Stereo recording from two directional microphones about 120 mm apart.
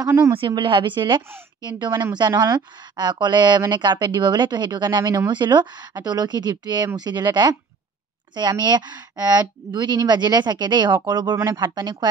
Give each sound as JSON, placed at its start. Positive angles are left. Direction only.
{"t": 0.3, "sound": "speech", "side_deg": -45}